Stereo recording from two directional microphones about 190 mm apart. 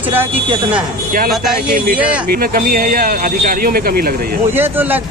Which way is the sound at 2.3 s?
50° right (ahead or behind).